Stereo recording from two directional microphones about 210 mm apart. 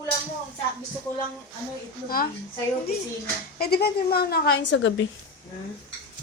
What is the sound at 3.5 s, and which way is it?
A woman's voice, 50° left (ahead or behind).